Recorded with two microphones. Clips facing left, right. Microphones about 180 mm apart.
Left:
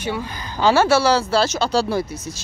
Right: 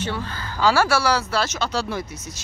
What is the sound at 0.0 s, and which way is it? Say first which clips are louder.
Speech: left 2 dB; 10° left (ahead or behind).